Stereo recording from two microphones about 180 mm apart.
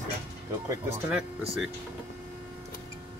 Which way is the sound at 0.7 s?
5° right (ahead or behind).